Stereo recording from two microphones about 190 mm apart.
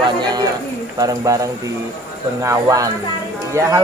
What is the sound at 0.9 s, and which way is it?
Speech, 15° right (ahead or behind).